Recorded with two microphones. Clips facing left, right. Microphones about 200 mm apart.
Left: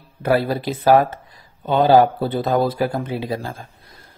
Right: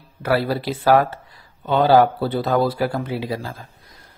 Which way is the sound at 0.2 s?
20° left (ahead or behind).